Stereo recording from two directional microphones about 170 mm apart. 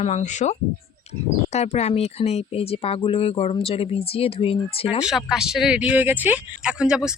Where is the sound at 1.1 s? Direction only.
40° left (ahead or behind).